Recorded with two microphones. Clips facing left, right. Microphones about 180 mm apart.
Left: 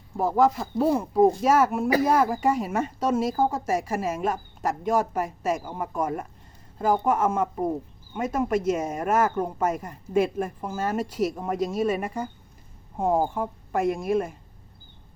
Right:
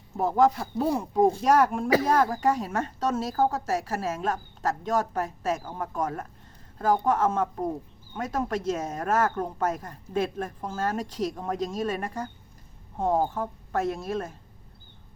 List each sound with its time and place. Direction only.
0.2 s speech: centre (ahead or behind)